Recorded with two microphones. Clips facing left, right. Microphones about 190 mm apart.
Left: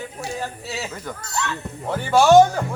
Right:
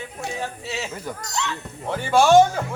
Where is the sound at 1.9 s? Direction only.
5° left (ahead or behind).